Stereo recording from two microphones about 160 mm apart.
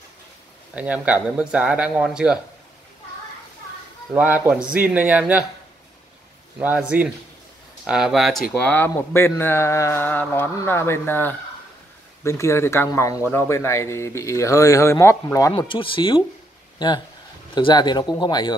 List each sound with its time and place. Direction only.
0.7 s speech: 10° right (ahead or behind)
4.1 s speech: 10° right (ahead or behind)
6.6 s speech: 10° right (ahead or behind); by 15.6 s 20° left (ahead or behind)
15.7 s speech: 30° left (ahead or behind)